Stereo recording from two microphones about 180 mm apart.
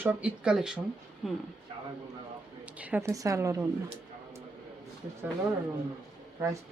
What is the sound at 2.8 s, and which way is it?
Speech, 10° right (ahead or behind).